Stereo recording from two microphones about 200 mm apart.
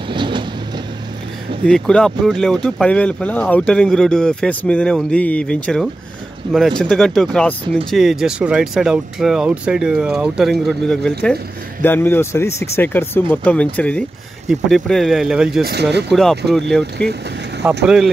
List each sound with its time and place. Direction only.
0.1 s vehicle: 25° right (ahead or behind)
1.7 s speech: 5° left (ahead or behind)
6.4 s speech: 20° right (ahead or behind)
6.8 s speech: centre (ahead or behind)
15.6 s speech: 55° right (ahead or behind)
16.1 s speech: centre (ahead or behind)